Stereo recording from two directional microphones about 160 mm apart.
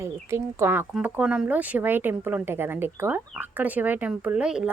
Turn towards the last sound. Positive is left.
turn(degrees=-5)  # may be behind; listen again after turning